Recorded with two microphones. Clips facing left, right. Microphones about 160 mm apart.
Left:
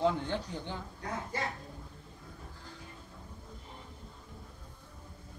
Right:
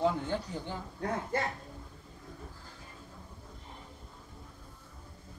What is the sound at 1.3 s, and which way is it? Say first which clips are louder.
Speech: right 4 dB; 55° right (ahead or behind).